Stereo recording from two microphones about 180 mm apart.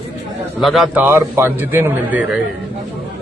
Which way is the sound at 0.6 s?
Centre (ahead or behind).